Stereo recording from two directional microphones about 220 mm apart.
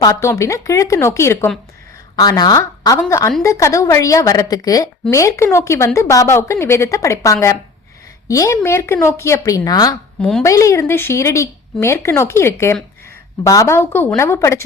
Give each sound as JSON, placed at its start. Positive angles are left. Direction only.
{"t": 0.0, "sound": "speech", "side_deg": 15}
{"t": 10.2, "sound": "a woman's voice", "side_deg": 0}
{"t": 10.4, "sound": "speech", "side_deg": 15}